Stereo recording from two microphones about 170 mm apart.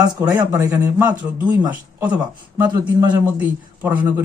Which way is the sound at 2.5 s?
15° right (ahead or behind).